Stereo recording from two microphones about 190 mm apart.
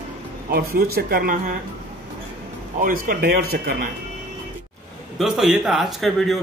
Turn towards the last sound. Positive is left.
turn(degrees=0)  # may be behind; listen again after turning